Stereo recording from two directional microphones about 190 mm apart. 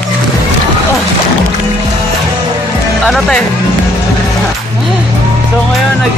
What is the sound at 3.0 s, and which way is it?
Music, centre (ahead or behind).